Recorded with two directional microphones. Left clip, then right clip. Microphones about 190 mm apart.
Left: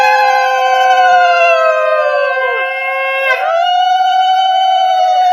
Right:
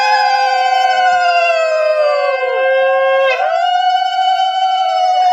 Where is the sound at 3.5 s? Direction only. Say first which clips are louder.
Left 2 dB; 15° right (ahead or behind).